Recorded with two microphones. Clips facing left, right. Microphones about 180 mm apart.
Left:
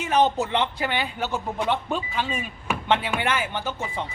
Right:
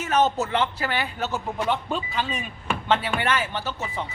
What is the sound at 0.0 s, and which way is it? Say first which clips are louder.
A man's voice: left 1 dB; 15° left (ahead or behind).